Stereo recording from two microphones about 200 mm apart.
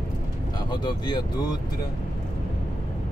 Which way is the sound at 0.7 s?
20° left (ahead or behind).